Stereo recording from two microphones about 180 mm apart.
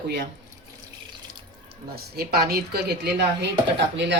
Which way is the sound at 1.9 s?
60° right (ahead or behind).